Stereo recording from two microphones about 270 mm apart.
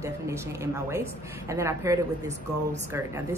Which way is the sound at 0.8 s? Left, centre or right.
Centre.